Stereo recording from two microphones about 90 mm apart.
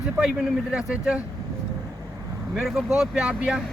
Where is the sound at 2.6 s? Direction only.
5° right (ahead or behind).